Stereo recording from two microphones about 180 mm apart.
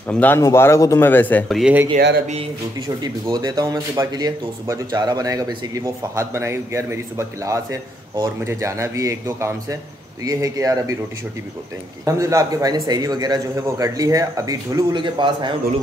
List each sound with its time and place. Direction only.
0.1 s speech: 10° left (ahead or behind)
1.6 s speech: 10° right (ahead or behind)
3.0 s a man's voice: 25° right (ahead or behind)
12.0 s a man's voice: 20° right (ahead or behind)